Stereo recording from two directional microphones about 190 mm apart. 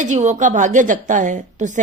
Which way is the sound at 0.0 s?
40° right (ahead or behind).